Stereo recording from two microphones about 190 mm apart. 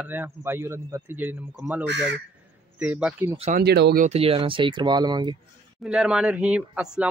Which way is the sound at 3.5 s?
60° right (ahead or behind).